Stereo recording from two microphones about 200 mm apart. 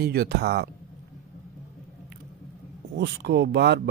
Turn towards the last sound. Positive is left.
turn(degrees=-55)  # may be behind; listen again after turning